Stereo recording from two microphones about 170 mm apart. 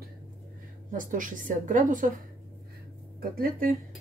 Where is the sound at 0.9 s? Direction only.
50° right (ahead or behind).